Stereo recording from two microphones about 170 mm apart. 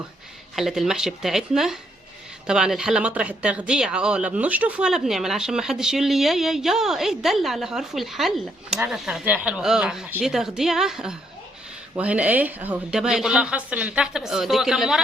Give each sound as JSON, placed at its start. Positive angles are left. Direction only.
{"t": 0.5, "sound": "speech", "side_deg": 0}